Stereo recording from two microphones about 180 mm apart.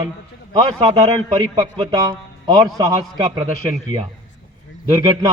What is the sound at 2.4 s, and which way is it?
A man's voice, 20° right (ahead or behind).